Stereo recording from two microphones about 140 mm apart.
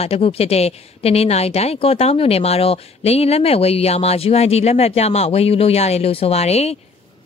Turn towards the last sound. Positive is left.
turn(degrees=50)  # may be behind; listen again after turning